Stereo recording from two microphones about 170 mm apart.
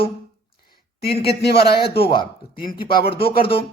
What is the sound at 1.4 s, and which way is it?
Speech, 75° left (ahead or behind).